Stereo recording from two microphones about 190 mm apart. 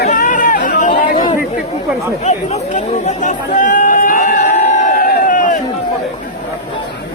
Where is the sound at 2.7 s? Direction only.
40° left (ahead or behind).